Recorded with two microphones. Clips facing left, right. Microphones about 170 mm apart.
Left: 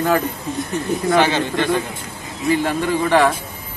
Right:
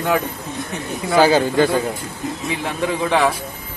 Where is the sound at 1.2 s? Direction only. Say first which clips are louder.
Right 5 dB; 40° right (ahead or behind).